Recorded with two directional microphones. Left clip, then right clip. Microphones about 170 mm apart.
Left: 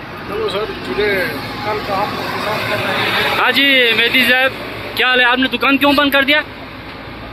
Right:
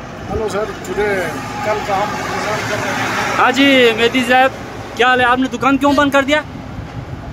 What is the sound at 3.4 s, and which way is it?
Speech, 15° right (ahead or behind).